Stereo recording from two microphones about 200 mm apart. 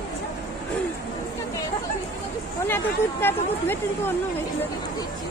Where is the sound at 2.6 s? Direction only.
10° left (ahead or behind).